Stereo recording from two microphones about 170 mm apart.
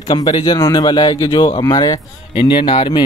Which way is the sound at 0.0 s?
25° left (ahead or behind).